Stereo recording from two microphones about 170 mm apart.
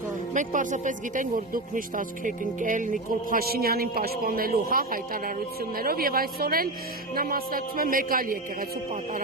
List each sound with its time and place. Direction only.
0.3 s speech: 50° right (ahead or behind)
3.5 s speech: 60° right (ahead or behind)